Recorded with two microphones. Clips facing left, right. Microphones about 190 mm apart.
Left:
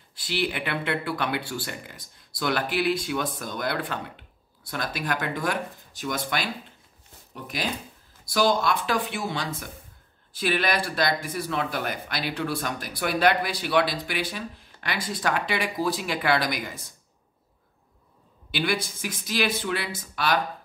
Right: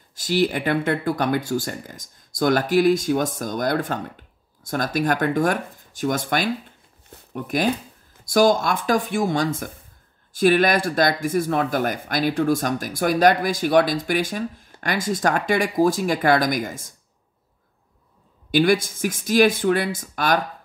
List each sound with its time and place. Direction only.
0.1 s speech: 45° right (ahead or behind)
18.5 s speech: 45° right (ahead or behind)